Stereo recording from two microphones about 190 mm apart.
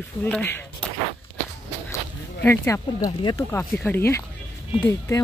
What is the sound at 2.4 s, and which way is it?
A woman's voice, 15° left (ahead or behind).